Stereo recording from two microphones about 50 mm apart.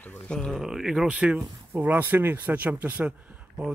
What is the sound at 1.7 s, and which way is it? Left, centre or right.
Speech, right.